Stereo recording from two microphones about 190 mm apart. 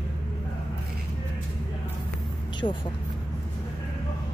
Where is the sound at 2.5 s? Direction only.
25° left (ahead or behind).